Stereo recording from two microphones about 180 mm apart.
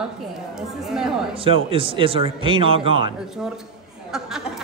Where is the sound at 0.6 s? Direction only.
5° right (ahead or behind).